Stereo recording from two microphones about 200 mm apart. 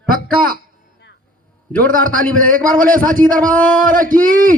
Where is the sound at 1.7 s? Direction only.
45° right (ahead or behind).